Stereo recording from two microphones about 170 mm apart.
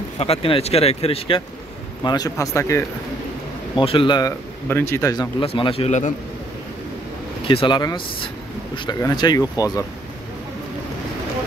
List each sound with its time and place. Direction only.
0.2 s speech: 35° left (ahead or behind)
2.0 s speech: 20° left (ahead or behind)
3.7 s speech: 30° left (ahead or behind)
4.6 s speech: 15° left (ahead or behind)
5.4 s speech: 35° left (ahead or behind)
7.4 s speech: 30° left (ahead or behind)